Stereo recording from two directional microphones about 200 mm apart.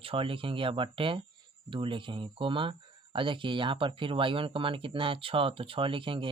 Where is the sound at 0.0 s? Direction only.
25° right (ahead or behind).